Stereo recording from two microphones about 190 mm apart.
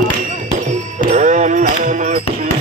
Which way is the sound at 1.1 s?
40° right (ahead or behind).